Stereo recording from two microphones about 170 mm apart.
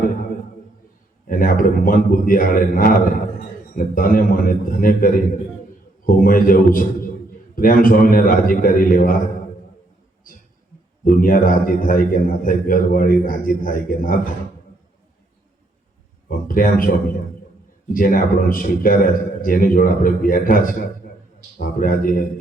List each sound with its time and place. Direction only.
1.3 s a man's voice: 55° left (ahead or behind)
11.0 s a man's voice: 55° left (ahead or behind)
16.5 s a man's voice: 55° left (ahead or behind)